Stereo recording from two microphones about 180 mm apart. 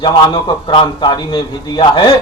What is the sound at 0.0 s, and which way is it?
A man's voice, 25° left (ahead or behind).